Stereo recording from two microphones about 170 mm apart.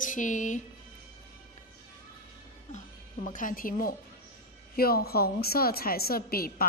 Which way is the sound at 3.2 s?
50° left (ahead or behind).